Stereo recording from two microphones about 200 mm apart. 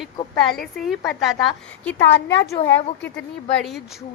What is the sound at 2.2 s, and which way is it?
Speech, 60° left (ahead or behind).